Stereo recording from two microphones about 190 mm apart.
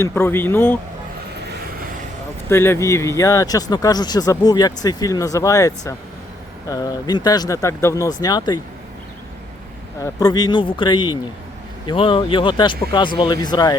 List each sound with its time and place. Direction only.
0.0 s speech: 15° left (ahead or behind)
2.5 s speech: 15° left (ahead or behind)
10.0 s speech: 20° left (ahead or behind)